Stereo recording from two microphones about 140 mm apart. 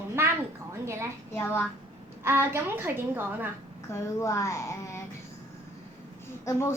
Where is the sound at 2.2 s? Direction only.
15° right (ahead or behind).